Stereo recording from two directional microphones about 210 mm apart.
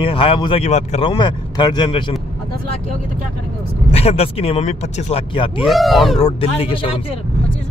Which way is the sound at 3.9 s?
30° left (ahead or behind).